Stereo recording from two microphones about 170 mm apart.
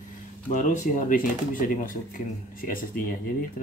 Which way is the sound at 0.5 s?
50° left (ahead or behind).